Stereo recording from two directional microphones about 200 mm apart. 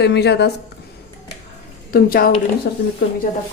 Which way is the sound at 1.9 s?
45° left (ahead or behind).